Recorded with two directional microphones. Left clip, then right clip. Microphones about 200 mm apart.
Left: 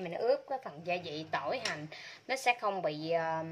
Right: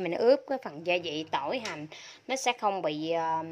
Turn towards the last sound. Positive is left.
turn(degrees=-25)  # may be behind; listen again after turning